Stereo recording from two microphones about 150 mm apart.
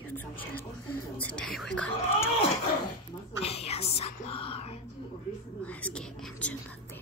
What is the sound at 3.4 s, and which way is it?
Speech, 45° left (ahead or behind).